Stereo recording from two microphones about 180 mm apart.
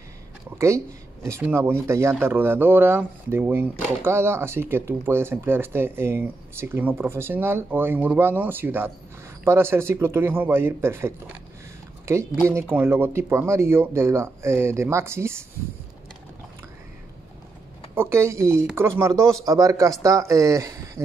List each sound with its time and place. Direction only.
0.6 s speech: 15° right (ahead or behind)
17.9 s speech: 15° right (ahead or behind)